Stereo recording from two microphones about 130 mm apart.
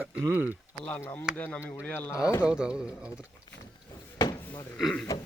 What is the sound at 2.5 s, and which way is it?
Speech, 5° right (ahead or behind).